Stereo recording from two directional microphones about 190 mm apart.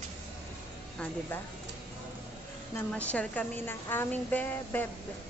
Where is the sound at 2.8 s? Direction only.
5° left (ahead or behind).